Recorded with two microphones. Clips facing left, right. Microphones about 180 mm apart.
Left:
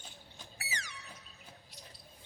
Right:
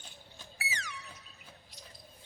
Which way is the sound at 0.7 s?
90° right.